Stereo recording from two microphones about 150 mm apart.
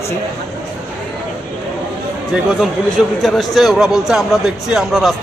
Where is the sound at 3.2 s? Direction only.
Centre (ahead or behind).